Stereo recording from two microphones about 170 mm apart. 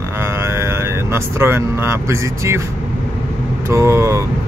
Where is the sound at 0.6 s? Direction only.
15° right (ahead or behind).